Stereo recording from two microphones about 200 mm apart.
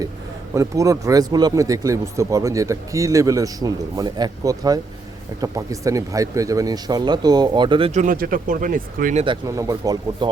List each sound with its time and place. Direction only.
0.5 s speech: 15° right (ahead or behind)
8.0 s speech: 45° right (ahead or behind)
9.2 s speech: 20° right (ahead or behind)